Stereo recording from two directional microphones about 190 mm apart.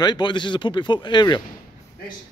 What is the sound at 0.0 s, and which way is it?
A man's voice, 25° left (ahead or behind).